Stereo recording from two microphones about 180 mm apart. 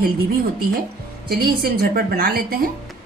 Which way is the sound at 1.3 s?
60° right (ahead or behind).